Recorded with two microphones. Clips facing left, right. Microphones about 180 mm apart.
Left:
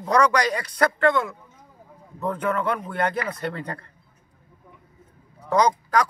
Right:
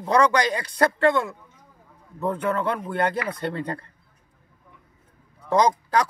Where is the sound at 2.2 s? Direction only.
30° right (ahead or behind).